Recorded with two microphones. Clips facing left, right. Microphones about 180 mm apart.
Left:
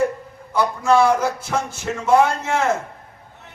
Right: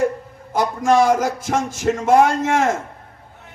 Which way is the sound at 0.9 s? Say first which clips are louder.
Right 1 dB; 45° right (ahead or behind).